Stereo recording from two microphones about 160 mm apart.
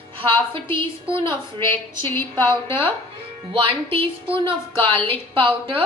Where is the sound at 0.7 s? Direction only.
35° right (ahead or behind).